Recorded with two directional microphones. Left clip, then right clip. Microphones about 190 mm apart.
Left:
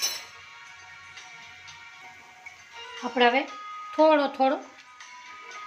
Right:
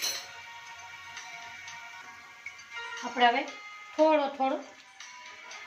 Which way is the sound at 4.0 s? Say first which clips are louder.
Left 4 dB; 65° left (ahead or behind).